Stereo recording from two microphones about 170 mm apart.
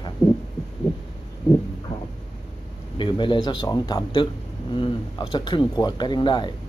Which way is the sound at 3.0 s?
30° left (ahead or behind).